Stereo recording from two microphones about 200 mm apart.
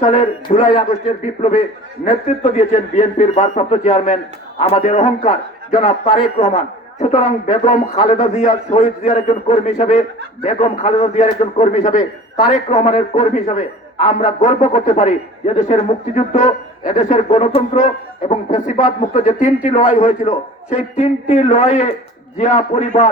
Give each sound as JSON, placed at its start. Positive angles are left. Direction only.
{"t": 0.0, "sound": "a man's voice", "side_deg": 30}
{"t": 19.2, "sound": "a man's voice", "side_deg": 40}